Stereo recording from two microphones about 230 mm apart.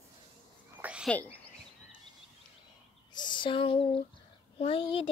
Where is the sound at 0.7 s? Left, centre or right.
Centre.